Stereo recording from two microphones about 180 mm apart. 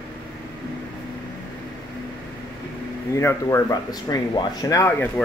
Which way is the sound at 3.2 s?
15° left (ahead or behind).